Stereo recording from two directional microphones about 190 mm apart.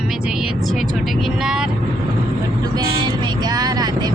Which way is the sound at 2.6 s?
20° right (ahead or behind).